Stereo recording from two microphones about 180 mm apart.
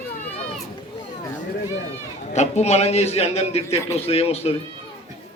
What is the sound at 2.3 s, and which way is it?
A man's voice, 40° left (ahead or behind).